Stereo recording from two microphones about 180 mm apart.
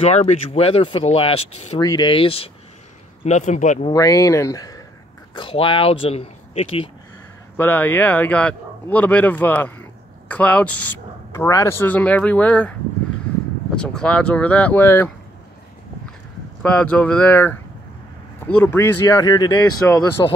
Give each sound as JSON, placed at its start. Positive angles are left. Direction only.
{"t": 0.0, "sound": "speech", "side_deg": 35}
{"t": 1.8, "sound": "speech", "side_deg": 25}
{"t": 3.9, "sound": "speech", "side_deg": 20}
{"t": 7.5, "sound": "a man's voice", "side_deg": 10}
{"t": 13.7, "sound": "a man's voice", "side_deg": 5}
{"t": 16.6, "sound": "a man's voice", "side_deg": 5}
{"t": 18.6, "sound": "speech", "side_deg": 10}